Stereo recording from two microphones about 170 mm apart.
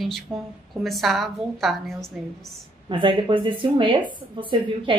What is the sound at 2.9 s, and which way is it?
A woman's voice, 30° right (ahead or behind).